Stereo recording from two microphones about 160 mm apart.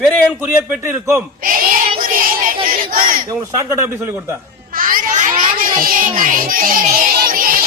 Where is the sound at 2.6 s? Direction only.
60° right (ahead or behind).